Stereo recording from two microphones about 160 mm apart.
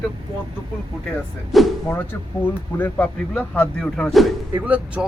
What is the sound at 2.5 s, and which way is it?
Speech, 10° left (ahead or behind).